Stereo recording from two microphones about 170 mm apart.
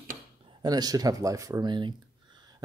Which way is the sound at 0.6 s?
25° right (ahead or behind).